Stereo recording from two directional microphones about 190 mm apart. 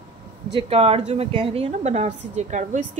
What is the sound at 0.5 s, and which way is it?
A woman's voice, 30° right (ahead or behind).